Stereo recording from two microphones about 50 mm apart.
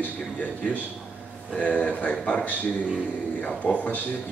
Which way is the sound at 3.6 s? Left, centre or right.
Left.